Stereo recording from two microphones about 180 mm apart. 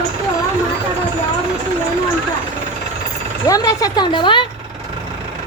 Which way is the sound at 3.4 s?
20° left (ahead or behind).